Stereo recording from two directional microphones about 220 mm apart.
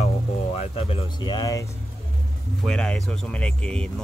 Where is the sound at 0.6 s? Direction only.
25° left (ahead or behind).